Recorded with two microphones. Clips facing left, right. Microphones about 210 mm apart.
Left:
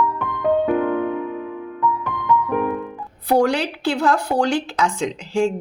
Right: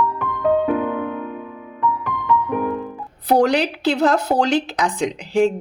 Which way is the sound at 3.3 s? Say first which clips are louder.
Right 1 dB; 20° right (ahead or behind).